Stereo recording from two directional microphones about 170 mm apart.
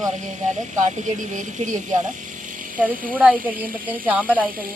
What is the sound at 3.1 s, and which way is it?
Speech, 10° right (ahead or behind).